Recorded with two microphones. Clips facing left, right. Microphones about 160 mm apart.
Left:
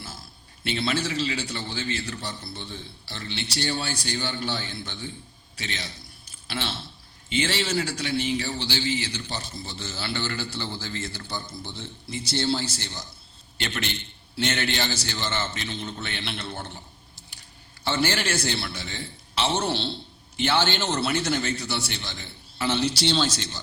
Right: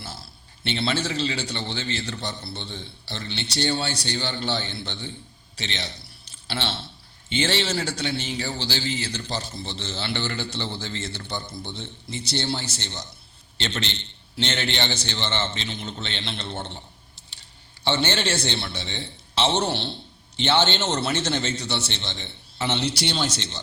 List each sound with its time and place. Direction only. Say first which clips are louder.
0.0 s a man's voice: right 2 dB; 30° right (ahead or behind)
9.3 s a man's voice: right 4 dB; 25° right (ahead or behind)
17.8 s a man's voice: right 1 dB; 25° right (ahead or behind)